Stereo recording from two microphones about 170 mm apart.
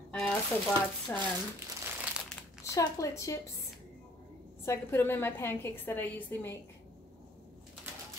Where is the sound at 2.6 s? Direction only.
20° left (ahead or behind).